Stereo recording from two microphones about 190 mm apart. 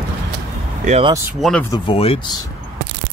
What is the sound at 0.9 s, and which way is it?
Speech, 30° right (ahead or behind).